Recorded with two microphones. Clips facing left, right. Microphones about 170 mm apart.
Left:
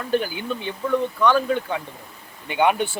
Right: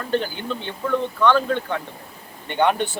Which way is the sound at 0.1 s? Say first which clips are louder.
Left 1 dB; 10° left (ahead or behind).